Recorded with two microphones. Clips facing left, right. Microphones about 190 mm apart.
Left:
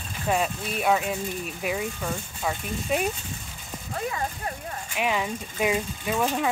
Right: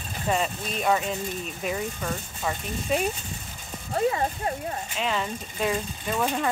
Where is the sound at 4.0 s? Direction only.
30° right (ahead or behind).